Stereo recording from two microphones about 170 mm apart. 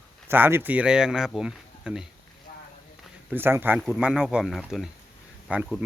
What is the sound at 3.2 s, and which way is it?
Speech, 10° right (ahead or behind).